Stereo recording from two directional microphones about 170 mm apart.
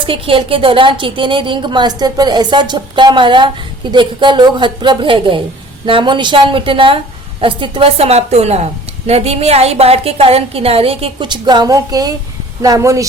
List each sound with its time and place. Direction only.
0.0 s a woman's voice: 30° right (ahead or behind)